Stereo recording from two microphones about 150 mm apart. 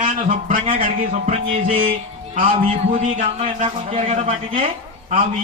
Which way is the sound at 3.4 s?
40° right (ahead or behind).